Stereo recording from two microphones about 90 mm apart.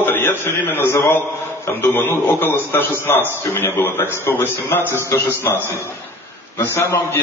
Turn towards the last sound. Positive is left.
turn(degrees=30)  # may be behind; listen again after turning